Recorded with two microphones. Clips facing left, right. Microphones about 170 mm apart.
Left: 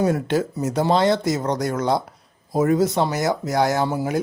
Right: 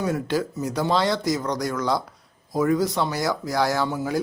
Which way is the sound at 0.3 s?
25° left (ahead or behind).